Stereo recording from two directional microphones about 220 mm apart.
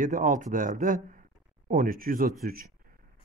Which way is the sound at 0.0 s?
35° right (ahead or behind).